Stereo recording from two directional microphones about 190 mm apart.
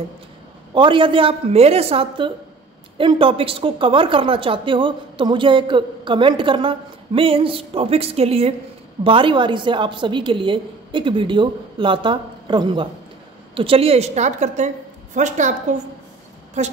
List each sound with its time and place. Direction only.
0.7 s a woman's voice: 25° right (ahead or behind)